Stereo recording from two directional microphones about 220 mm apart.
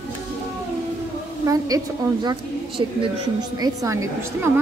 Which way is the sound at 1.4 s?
15° right (ahead or behind).